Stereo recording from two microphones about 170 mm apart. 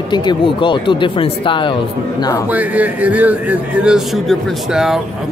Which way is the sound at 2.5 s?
10° right (ahead or behind).